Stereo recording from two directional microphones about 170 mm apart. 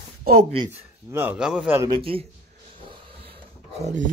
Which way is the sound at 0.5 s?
30° right (ahead or behind).